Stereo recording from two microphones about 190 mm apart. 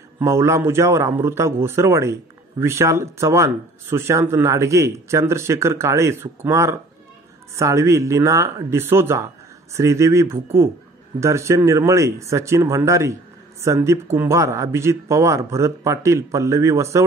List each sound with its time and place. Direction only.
0.2 s speech: 15° right (ahead or behind)